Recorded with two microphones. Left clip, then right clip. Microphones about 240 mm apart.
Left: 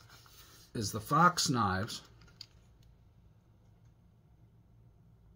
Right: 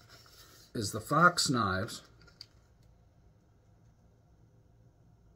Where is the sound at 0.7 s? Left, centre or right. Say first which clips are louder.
Even; centre.